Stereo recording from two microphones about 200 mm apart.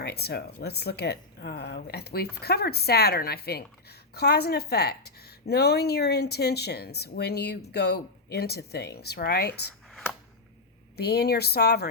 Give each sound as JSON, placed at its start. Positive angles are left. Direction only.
{"t": 0.0, "sound": "a woman's voice", "side_deg": 55}
{"t": 9.9, "sound": "a sound", "side_deg": 5}
{"t": 10.9, "sound": "a woman's voice", "side_deg": 55}